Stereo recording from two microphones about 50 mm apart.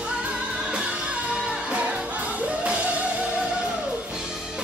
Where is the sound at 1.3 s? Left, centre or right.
Right.